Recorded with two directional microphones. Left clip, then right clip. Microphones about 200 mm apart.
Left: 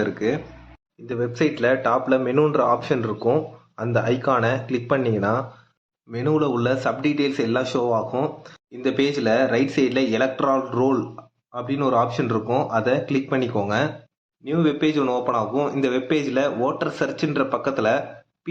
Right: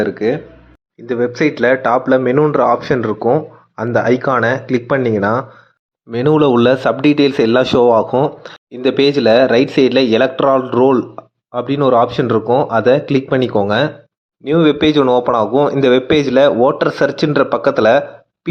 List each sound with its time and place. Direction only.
0.0 s speech: 25° right (ahead or behind)
1.0 s speech: 35° right (ahead or behind)
6.1 s speech: 45° right (ahead or behind)